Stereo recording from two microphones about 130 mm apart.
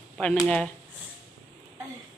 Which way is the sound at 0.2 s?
5° left (ahead or behind).